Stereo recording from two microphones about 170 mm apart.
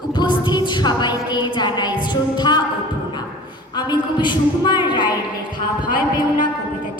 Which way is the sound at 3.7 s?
25° left (ahead or behind).